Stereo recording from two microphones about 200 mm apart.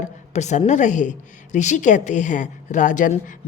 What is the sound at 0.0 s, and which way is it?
A woman's voice, 35° left (ahead or behind).